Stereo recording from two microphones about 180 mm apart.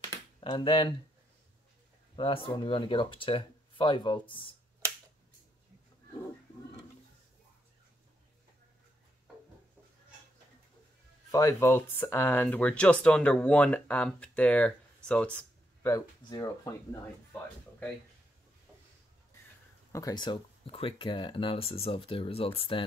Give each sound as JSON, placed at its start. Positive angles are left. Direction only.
{"t": 0.4, "sound": "speech", "side_deg": 30}
{"t": 2.1, "sound": "speech", "side_deg": 30}
{"t": 11.3, "sound": "speech", "side_deg": 15}
{"t": 19.9, "sound": "speech", "side_deg": 20}